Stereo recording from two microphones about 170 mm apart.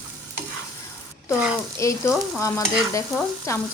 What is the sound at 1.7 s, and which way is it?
Speech, 15° left (ahead or behind).